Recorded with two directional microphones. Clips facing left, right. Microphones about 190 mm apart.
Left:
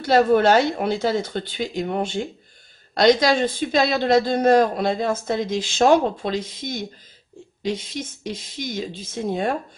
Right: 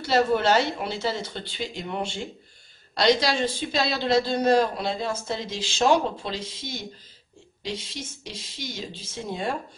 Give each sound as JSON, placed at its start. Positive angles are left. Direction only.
{"t": 0.0, "sound": "speech", "side_deg": 50}